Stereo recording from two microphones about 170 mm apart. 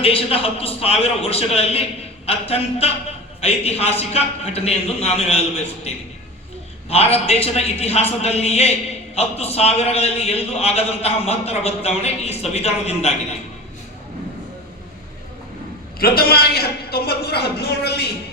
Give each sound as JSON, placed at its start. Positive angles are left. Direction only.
{"t": 0.0, "sound": "a man's voice", "side_deg": 35}
{"t": 6.9, "sound": "a man's voice", "side_deg": 35}
{"t": 16.0, "sound": "a man's voice", "side_deg": 65}